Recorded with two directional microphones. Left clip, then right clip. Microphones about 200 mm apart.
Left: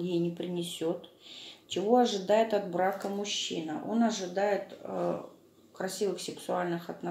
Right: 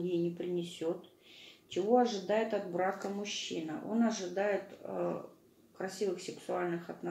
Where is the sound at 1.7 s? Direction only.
40° left (ahead or behind).